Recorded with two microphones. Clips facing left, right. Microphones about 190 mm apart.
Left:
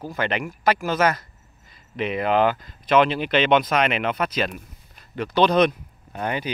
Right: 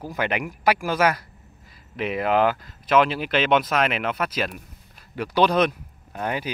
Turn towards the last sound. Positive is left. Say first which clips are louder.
# left 1 dB
turn(degrees=0)  # may be behind; listen again after turning